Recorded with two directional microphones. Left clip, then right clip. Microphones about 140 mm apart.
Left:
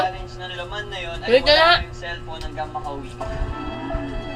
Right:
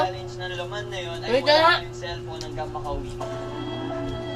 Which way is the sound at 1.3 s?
90° left.